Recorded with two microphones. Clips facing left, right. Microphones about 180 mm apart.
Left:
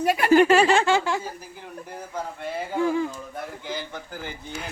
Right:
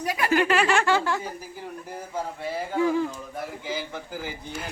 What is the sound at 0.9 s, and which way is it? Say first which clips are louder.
Speech: left 1 dB; 15° left (ahead or behind).